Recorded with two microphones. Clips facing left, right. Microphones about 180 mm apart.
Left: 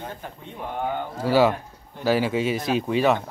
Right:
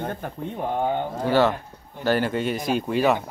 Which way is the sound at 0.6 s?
30° right (ahead or behind).